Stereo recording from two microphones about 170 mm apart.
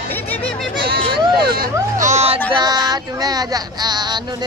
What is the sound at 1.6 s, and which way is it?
Speech, 45° right (ahead or behind).